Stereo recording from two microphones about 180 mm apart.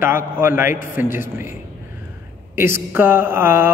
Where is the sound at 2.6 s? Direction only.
10° right (ahead or behind).